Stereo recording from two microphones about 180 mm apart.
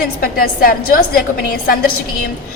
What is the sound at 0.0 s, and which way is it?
A woman's voice, 55° left (ahead or behind).